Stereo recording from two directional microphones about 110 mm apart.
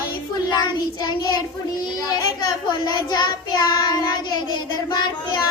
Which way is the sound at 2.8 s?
45° left (ahead or behind).